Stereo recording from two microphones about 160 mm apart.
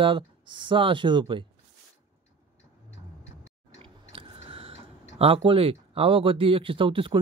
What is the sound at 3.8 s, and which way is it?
A man's voice, 35° right (ahead or behind).